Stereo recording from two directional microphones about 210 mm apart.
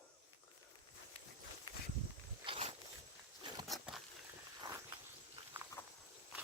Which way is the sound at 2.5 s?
30° right (ahead or behind).